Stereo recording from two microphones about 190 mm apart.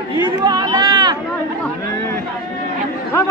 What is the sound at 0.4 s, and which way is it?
Run, 20° right (ahead or behind).